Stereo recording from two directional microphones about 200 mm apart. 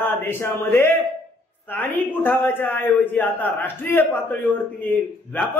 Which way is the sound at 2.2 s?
10° left (ahead or behind).